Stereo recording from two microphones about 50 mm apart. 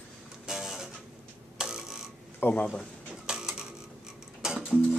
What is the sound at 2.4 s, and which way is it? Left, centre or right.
Speech, left.